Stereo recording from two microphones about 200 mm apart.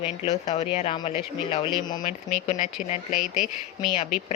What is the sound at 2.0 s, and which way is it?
Speech, 40° left (ahead or behind).